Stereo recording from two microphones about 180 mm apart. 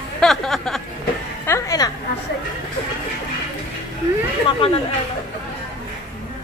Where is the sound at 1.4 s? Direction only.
15° left (ahead or behind).